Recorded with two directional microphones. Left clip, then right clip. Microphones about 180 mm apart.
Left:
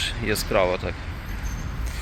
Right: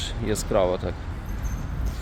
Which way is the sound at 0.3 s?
20° right (ahead or behind).